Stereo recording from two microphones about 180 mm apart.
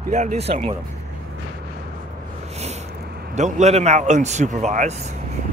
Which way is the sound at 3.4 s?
40° right (ahead or behind).